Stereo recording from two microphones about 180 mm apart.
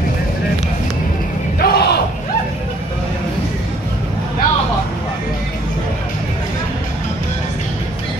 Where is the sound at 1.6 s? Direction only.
60° left (ahead or behind).